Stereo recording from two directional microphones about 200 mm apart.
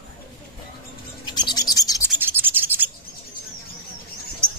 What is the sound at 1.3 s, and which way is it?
Bird, 20° left (ahead or behind).